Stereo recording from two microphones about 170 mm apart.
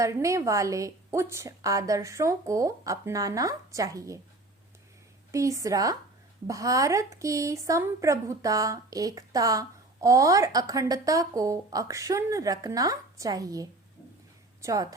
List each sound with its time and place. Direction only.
0.0 s a woman's voice: 20° right (ahead or behind)
5.3 s a woman's voice: 20° right (ahead or behind)